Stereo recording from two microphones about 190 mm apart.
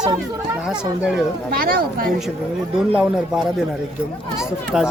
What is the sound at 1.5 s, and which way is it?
Speech, 50° right (ahead or behind).